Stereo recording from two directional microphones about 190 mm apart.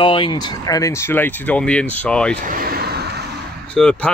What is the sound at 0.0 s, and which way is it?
Speech, 25° left (ahead or behind).